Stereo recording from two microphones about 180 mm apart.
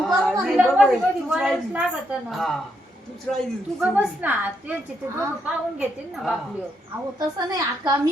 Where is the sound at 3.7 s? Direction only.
10° right (ahead or behind).